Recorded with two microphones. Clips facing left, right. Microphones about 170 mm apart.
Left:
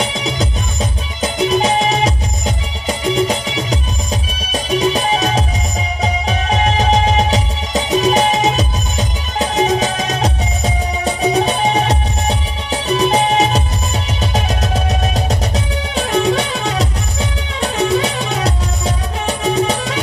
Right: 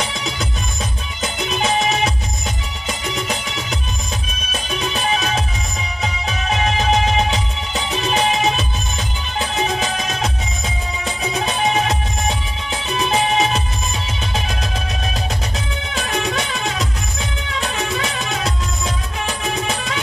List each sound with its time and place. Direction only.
0.1 s music: 30° left (ahead or behind)